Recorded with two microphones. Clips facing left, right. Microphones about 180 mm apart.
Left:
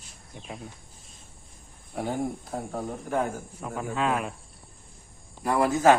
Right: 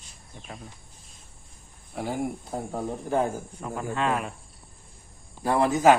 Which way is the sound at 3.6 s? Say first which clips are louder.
Even; centre (ahead or behind).